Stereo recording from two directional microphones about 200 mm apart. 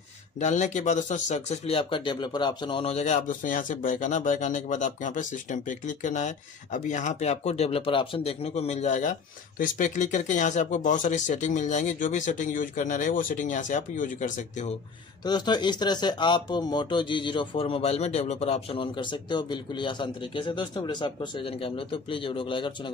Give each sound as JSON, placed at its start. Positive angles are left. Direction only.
{"t": 0.4, "sound": "speech", "side_deg": 35}
{"t": 15.2, "sound": "speech", "side_deg": 20}